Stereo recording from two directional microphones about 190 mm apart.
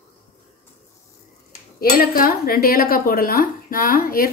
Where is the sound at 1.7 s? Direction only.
50° left (ahead or behind).